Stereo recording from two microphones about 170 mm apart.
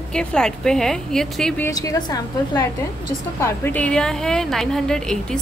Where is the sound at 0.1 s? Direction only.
5° left (ahead or behind).